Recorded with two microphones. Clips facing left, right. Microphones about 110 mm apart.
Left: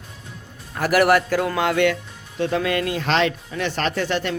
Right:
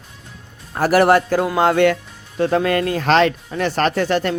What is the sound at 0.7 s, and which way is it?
A man's voice, 35° right (ahead or behind).